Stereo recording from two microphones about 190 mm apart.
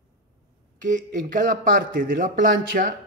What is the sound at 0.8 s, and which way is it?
Speech, 40° right (ahead or behind).